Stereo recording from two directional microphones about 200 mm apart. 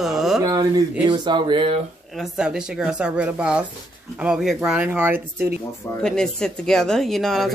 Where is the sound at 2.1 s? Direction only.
5° right (ahead or behind).